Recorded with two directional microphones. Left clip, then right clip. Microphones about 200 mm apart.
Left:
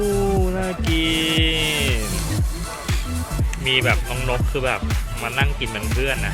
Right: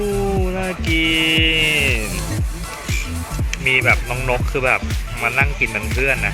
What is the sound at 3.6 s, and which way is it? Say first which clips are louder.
Speech: right 4 dB; centre (ahead or behind).